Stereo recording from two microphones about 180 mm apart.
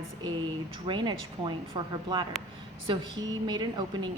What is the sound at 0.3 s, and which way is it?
A woman's voice, 25° right (ahead or behind).